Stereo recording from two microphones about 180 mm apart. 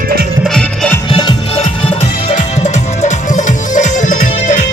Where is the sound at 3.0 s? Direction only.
40° left (ahead or behind).